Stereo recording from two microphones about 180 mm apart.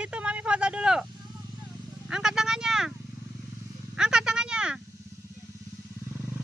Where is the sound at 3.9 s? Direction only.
5° right (ahead or behind).